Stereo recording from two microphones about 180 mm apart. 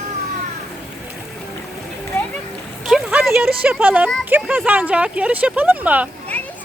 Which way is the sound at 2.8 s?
5° right (ahead or behind).